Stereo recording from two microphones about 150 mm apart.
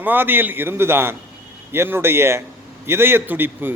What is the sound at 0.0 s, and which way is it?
A man's voice, 15° right (ahead or behind).